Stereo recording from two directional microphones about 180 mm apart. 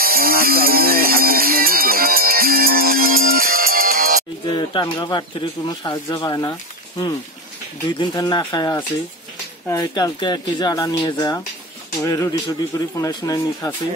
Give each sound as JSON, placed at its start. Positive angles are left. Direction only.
{"t": 0.0, "sound": "a sound", "side_deg": -55}
{"t": 4.5, "sound": "speech", "side_deg": 25}
{"t": 8.0, "sound": "speech", "side_deg": 25}